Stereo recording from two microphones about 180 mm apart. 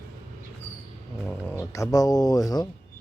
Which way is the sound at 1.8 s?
20° left (ahead or behind).